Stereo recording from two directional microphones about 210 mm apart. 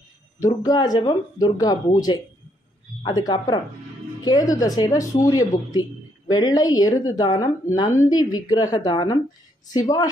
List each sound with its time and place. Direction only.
0.7 s speech: 20° left (ahead or behind)